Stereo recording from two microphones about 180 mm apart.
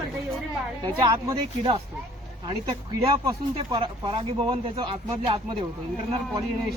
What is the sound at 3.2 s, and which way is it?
Speech, 25° right (ahead or behind).